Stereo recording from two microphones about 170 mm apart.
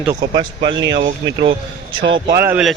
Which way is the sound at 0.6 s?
90° right.